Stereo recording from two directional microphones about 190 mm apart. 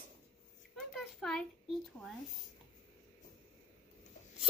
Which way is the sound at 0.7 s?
5° left (ahead or behind).